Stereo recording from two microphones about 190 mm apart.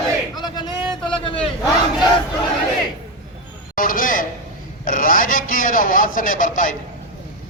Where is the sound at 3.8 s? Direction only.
45° left (ahead or behind).